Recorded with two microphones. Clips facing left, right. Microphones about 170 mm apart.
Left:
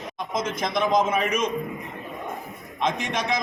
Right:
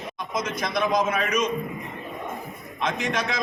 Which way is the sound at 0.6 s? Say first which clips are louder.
Left 1 dB; 20° left (ahead or behind).